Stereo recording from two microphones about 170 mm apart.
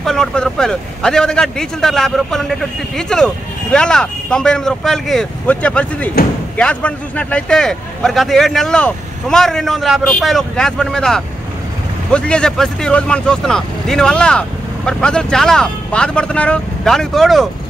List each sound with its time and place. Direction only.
0.0 s a man's voice: 5° left (ahead or behind)